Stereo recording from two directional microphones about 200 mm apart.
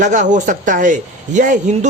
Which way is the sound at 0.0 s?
40° right (ahead or behind).